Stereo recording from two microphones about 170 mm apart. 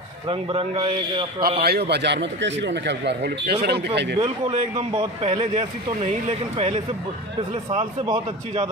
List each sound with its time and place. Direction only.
0.3 s a man's voice: 35° right (ahead or behind)
1.6 s speech: 70° right (ahead or behind)
4.2 s a man's voice: 35° right (ahead or behind)